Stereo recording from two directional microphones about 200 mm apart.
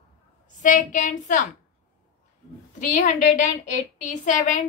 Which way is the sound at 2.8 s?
40° left (ahead or behind).